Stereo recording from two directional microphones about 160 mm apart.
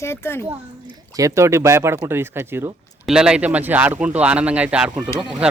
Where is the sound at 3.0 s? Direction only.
5° right (ahead or behind).